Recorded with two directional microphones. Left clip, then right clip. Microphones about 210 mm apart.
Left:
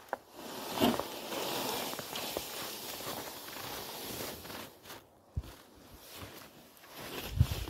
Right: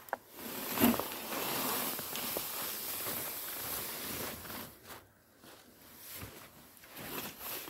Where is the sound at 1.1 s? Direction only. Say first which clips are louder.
Left 1 dB; 30° right (ahead or behind).